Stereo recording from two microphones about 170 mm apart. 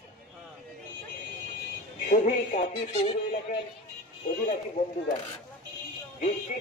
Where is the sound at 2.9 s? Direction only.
40° left (ahead or behind).